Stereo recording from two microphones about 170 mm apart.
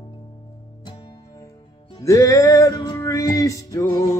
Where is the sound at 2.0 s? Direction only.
20° left (ahead or behind).